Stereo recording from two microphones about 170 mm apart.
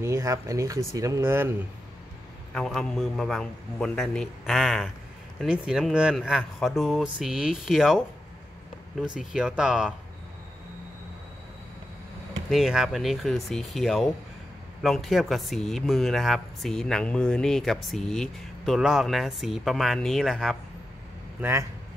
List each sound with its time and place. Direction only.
0.0 s speech: 15° right (ahead or behind)
2.5 s speech: 5° left (ahead or behind)
9.3 s speech: 5° right (ahead or behind)
12.4 s speech: centre (ahead or behind)
21.4 s a man's voice: 15° right (ahead or behind)